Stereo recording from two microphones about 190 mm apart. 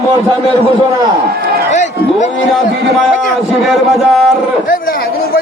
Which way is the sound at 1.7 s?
40° left (ahead or behind).